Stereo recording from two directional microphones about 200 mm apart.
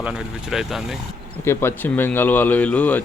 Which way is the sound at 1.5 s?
10° left (ahead or behind).